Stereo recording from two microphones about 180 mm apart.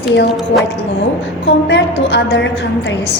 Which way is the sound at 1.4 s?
75° left (ahead or behind).